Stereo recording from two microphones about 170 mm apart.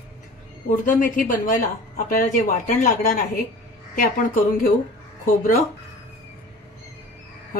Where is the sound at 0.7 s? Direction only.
50° left (ahead or behind).